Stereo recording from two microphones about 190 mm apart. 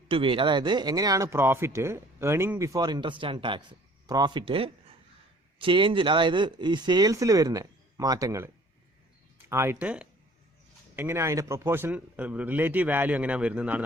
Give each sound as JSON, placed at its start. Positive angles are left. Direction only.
{"t": 0.1, "sound": "speech", "side_deg": -25}
{"t": 9.5, "sound": "a man's voice", "side_deg": -15}